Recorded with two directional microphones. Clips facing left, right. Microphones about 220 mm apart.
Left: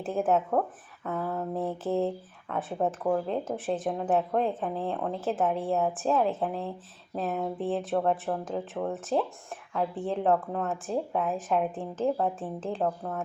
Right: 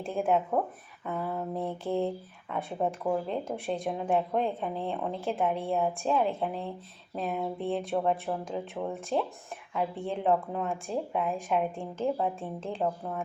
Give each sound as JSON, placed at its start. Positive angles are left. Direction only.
{"t": 0.0, "sound": "speech", "side_deg": 5}
{"t": 1.1, "sound": "a sound", "side_deg": -10}
{"t": 1.5, "sound": "speech", "side_deg": 5}